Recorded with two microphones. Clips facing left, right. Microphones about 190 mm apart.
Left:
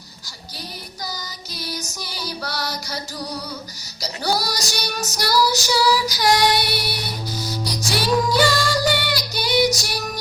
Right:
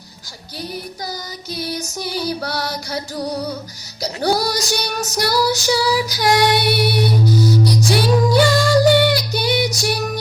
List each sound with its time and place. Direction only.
1.5 s music: 55° right (ahead or behind)
4.0 s female singing: 55° right (ahead or behind)
6.1 s music: 55° right (ahead or behind)